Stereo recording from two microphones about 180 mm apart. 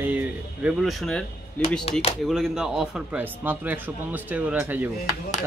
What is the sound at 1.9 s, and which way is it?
Speech, 35° left (ahead or behind).